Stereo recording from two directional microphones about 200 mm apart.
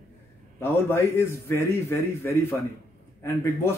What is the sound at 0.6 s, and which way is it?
A man's voice, 10° left (ahead or behind).